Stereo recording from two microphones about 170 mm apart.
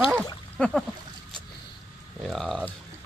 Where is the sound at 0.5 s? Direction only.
5° left (ahead or behind).